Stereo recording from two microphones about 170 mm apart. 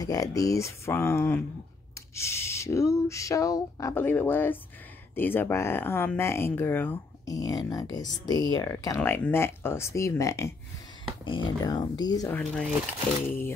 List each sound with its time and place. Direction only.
0.0 s speech: 20° left (ahead or behind)
12.3 s speech: 5° left (ahead or behind)